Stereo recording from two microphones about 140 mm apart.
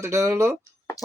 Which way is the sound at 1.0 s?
25° left (ahead or behind).